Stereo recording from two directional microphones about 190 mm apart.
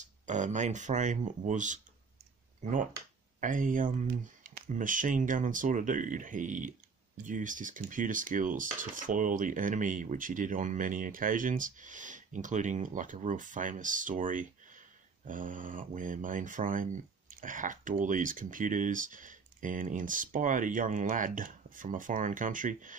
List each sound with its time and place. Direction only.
0.0 s speech: 40° right (ahead or behind)
3.3 s speech: 45° right (ahead or behind)